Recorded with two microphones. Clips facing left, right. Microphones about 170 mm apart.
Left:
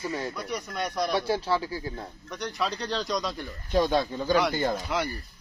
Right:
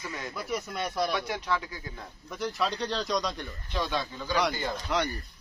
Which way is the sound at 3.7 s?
40° left (ahead or behind).